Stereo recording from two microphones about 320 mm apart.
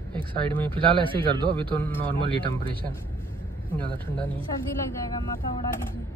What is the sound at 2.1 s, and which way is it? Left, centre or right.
Speech, centre.